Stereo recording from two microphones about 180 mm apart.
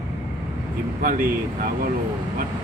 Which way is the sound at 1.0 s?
50° right (ahead or behind).